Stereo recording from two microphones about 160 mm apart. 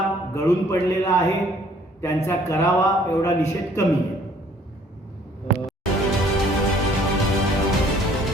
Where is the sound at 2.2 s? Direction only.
15° left (ahead or behind).